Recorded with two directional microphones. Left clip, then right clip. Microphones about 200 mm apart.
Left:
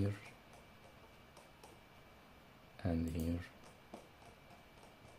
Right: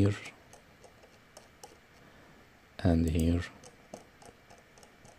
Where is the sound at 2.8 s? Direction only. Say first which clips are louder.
Right 12 dB; 45° right (ahead or behind).